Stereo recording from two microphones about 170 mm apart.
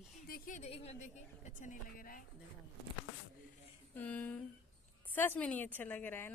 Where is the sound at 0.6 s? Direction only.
35° left (ahead or behind); by 2.3 s 55° left (ahead or behind).